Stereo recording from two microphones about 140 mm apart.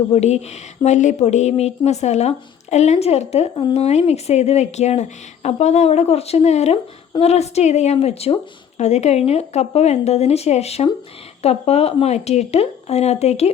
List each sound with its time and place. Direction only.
0.1 s a woman's voice: 50° left (ahead or behind)